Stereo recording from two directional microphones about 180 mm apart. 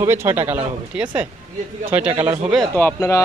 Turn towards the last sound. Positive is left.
turn(degrees=15)  # may be behind; listen again after turning